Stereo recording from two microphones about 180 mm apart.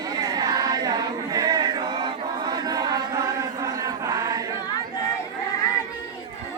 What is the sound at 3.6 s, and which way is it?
Chant, 20° right (ahead or behind).